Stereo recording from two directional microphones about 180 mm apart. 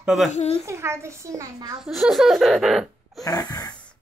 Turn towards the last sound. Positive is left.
turn(degrees=20)  # may be behind; listen again after turning